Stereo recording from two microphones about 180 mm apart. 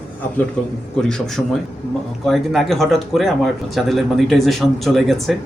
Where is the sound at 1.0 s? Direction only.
5° left (ahead or behind).